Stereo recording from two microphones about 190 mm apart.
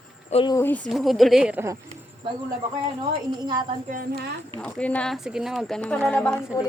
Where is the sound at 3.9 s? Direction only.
55° right (ahead or behind).